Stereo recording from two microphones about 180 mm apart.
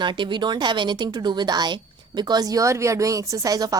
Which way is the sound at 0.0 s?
25° right (ahead or behind).